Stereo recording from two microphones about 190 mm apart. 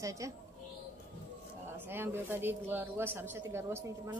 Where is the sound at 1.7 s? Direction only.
10° right (ahead or behind).